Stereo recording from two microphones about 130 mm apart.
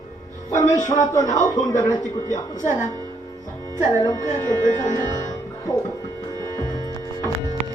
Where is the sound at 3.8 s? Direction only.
30° left (ahead or behind).